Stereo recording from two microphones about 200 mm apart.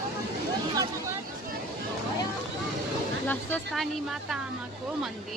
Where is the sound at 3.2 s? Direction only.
10° left (ahead or behind).